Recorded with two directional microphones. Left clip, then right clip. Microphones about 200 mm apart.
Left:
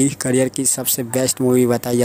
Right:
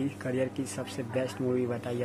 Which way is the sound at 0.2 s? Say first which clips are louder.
Left 13 dB; 45° left (ahead or behind).